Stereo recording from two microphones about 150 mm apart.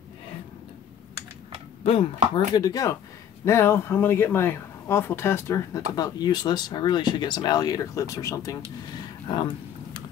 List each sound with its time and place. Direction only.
1.8 s speech: 40° left (ahead or behind)
2.3 s speech: 25° left (ahead or behind)